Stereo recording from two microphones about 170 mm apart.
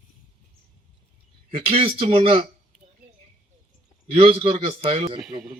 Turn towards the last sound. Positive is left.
turn(degrees=-35)  # may be behind; listen again after turning